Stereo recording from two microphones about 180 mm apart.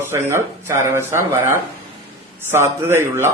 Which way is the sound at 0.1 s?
15° right (ahead or behind).